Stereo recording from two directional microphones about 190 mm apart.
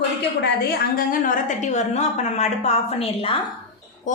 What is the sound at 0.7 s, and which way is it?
A woman's voice, 50° left (ahead or behind).